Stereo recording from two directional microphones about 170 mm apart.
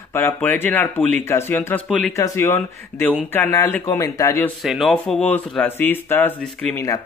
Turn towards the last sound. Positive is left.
turn(degrees=15)  # may be behind; listen again after turning